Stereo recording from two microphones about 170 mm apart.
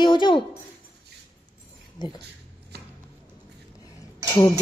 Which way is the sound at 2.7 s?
70° right (ahead or behind).